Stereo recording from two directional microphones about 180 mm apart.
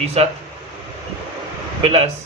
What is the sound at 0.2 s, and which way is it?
Speech, 35° right (ahead or behind).